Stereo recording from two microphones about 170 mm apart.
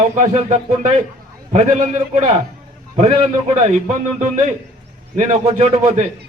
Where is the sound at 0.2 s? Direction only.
45° right (ahead or behind).